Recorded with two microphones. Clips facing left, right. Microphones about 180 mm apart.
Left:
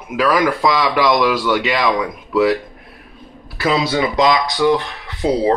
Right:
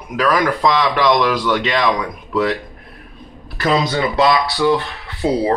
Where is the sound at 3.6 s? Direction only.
10° left (ahead or behind).